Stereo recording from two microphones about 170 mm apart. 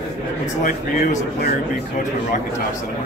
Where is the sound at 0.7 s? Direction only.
60° left (ahead or behind).